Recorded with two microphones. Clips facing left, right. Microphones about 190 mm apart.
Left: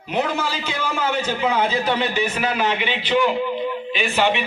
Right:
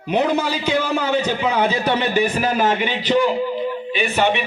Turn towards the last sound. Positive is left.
turn(degrees=-40)  # may be behind; listen again after turning